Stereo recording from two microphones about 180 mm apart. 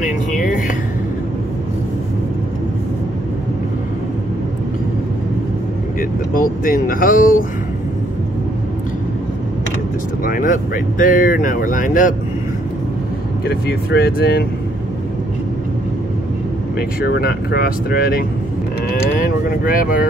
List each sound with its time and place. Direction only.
0.0 s music: 45° left (ahead or behind)
5.9 s speech: 50° left (ahead or behind)
10.2 s speech: 50° left (ahead or behind)
13.5 s speech: 60° left (ahead or behind)
17.0 s speech: 60° left (ahead or behind)